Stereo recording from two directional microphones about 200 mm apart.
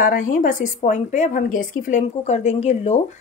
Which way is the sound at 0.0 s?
45° left (ahead or behind).